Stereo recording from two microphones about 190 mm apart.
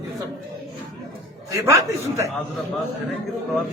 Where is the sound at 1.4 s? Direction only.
15° right (ahead or behind).